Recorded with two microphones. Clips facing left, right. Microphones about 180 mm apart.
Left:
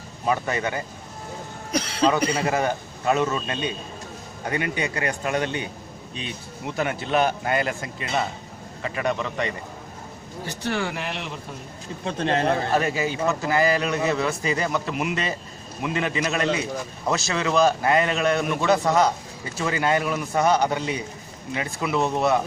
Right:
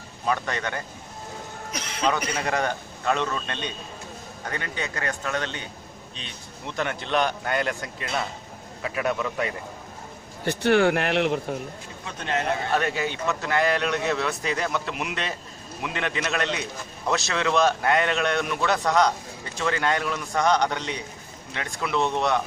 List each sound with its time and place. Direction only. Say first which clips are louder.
0.3 s a man's voice: left 3 dB; 5° left (ahead or behind)
1.7 s speech: left 10 dB; 35° left (ahead or behind)
2.4 s a man's voice: left 3 dB; 5° left (ahead or behind)
10.4 s speech: right 8 dB; 60° right (ahead or behind)
12.0 s speech: left 5 dB; 30° left (ahead or behind)
12.7 s a man's voice: left 2 dB; centre (ahead or behind)